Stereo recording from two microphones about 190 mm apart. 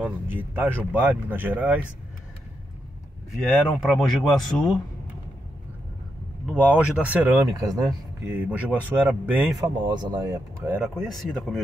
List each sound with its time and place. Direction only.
0.0 s speech: 10° right (ahead or behind)
3.4 s speech: centre (ahead or behind)
6.6 s speech: 5° right (ahead or behind)
7.6 s speech: centre (ahead or behind)
9.9 s speech: 20° right (ahead or behind)
10.8 s speech: centre (ahead or behind)